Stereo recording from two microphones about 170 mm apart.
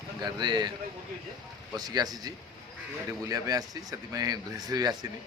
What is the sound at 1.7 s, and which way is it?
Speech, 20° right (ahead or behind).